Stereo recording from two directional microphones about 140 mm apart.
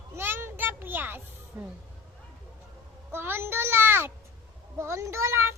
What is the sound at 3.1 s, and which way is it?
A child's voice, 15° right (ahead or behind).